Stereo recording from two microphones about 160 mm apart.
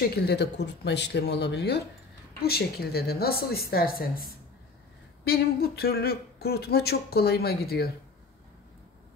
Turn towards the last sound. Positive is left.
turn(degrees=75)  # may be behind; listen again after turning